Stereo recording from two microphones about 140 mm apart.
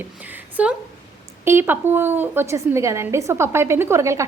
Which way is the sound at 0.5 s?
10° right (ahead or behind).